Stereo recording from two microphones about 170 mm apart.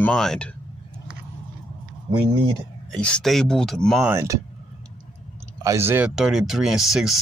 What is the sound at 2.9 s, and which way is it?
Speech, 5° left (ahead or behind).